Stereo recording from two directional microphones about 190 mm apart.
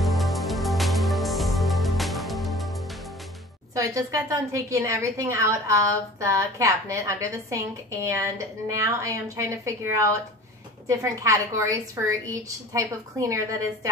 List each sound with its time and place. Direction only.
0.0 s music: centre (ahead or behind)
3.7 s a woman's voice: 15° right (ahead or behind)